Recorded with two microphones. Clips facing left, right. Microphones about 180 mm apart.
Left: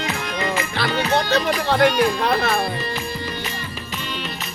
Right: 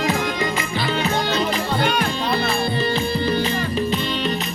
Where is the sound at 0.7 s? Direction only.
70° left (ahead or behind).